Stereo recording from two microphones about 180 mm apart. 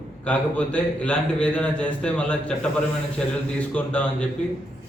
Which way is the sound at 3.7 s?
5° left (ahead or behind).